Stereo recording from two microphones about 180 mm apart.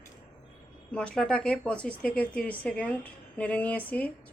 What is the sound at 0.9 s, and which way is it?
A woman's voice, 5° left (ahead or behind).